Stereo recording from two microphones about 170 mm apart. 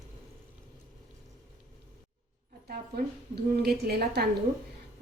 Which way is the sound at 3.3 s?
65° right (ahead or behind).